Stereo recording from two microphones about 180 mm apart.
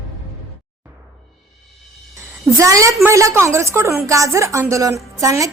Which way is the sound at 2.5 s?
15° right (ahead or behind).